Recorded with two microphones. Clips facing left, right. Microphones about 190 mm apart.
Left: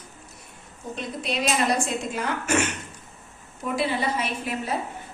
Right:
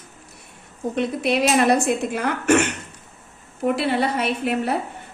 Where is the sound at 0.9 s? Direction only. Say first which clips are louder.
Right 8 dB; 60° right (ahead or behind).